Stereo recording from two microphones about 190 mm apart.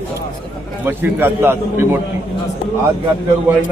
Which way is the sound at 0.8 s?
10° right (ahead or behind).